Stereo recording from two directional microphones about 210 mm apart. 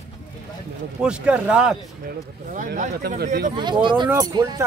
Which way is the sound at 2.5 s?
40° right (ahead or behind).